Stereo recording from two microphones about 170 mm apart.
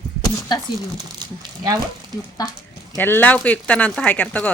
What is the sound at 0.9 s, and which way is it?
Speech, 20° right (ahead or behind).